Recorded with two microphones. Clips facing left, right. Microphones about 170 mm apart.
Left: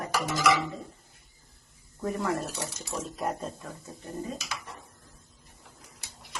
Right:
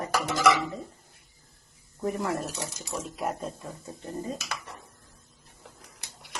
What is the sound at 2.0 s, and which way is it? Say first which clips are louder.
Speech: right 1 dB; 20° right (ahead or behind).